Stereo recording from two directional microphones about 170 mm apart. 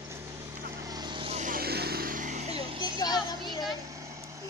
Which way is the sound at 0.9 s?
25° right (ahead or behind).